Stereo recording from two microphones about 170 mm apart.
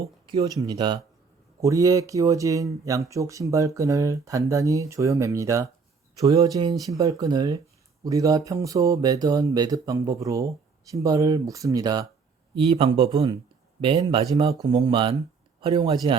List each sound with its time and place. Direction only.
0.3 s speech: 25° right (ahead or behind)
12.5 s speech: 35° right (ahead or behind)
13.1 s speech: 20° right (ahead or behind)